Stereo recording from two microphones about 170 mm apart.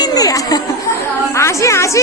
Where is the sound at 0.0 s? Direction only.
20° left (ahead or behind).